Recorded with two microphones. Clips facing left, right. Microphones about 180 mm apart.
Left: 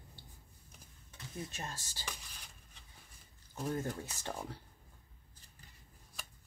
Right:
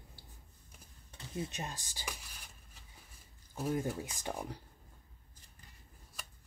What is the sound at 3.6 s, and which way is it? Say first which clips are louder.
Speech: right 3 dB; 10° right (ahead or behind).